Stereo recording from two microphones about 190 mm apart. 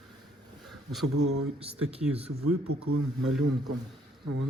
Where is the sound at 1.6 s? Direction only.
30° right (ahead or behind).